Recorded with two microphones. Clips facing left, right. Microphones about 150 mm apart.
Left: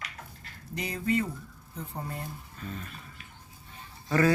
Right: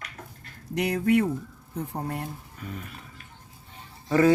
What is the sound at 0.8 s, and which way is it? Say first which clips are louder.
Speech: right 7 dB; 70° right (ahead or behind).